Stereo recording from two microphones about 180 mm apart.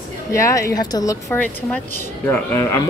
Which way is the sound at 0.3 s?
15° left (ahead or behind).